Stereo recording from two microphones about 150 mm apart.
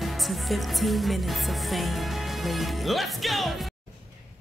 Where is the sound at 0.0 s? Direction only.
Centre (ahead or behind).